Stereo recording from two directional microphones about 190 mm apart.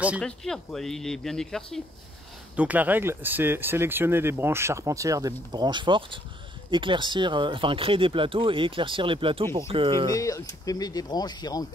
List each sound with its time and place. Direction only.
0.2 s speech: 5° left (ahead or behind); by 10.0 s 25° right (ahead or behind)
10.1 s speech: 15° left (ahead or behind)